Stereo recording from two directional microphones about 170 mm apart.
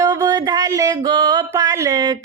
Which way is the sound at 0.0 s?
20° right (ahead or behind).